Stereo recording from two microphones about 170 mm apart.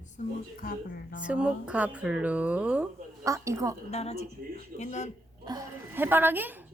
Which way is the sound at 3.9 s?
40° left (ahead or behind).